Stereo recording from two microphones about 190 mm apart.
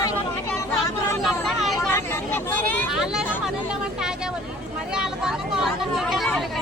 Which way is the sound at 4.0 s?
5° right (ahead or behind).